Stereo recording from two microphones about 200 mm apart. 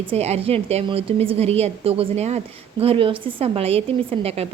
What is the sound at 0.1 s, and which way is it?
A woman's voice, 30° right (ahead or behind).